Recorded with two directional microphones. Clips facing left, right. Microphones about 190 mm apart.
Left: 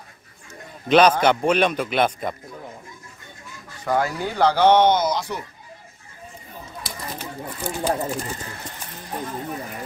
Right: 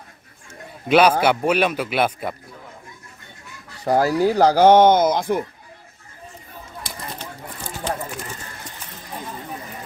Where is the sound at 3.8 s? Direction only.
35° right (ahead or behind); by 5.5 s 50° right (ahead or behind).